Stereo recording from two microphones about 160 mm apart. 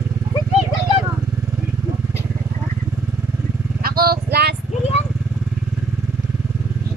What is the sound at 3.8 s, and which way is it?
Vehicle, 70° right (ahead or behind).